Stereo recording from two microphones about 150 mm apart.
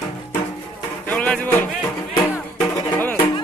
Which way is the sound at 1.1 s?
10° left (ahead or behind).